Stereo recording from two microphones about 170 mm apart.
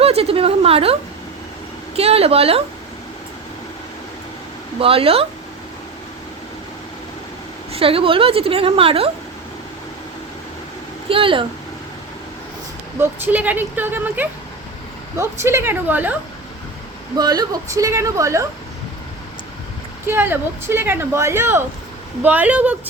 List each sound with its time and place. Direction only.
0.0 s a woman's voice: 35° right (ahead or behind)
2.0 s a woman's voice: 35° right (ahead or behind)
4.8 s a woman's voice: 35° right (ahead or behind)
7.7 s a woman's voice: 35° right (ahead or behind)
11.1 s a woman's voice: 30° right (ahead or behind)
13.0 s speech: 10° right (ahead or behind)
17.2 s speech: 25° right (ahead or behind)
20.1 s speech: 15° right (ahead or behind)